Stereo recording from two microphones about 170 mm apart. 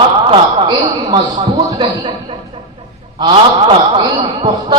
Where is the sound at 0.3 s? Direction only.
30° right (ahead or behind).